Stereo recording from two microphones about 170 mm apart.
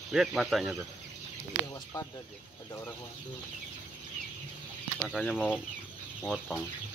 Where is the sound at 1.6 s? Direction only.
25° left (ahead or behind).